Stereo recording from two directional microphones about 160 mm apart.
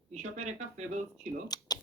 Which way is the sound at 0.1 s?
45° right (ahead or behind).